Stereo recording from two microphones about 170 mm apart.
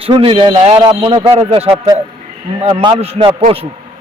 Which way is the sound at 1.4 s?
35° right (ahead or behind).